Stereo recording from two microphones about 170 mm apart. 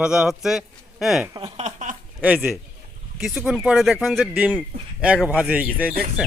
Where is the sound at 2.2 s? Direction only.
10° right (ahead or behind).